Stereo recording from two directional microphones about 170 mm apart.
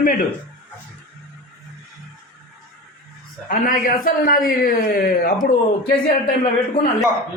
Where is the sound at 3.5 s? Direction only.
55° left (ahead or behind).